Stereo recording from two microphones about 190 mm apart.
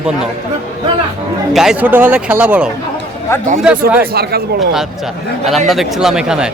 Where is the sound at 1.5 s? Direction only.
5° right (ahead or behind).